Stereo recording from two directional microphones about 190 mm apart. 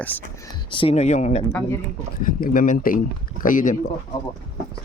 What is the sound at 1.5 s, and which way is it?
Speech, 10° left (ahead or behind).